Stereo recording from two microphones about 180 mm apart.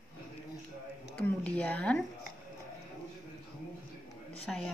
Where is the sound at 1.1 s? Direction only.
5° left (ahead or behind).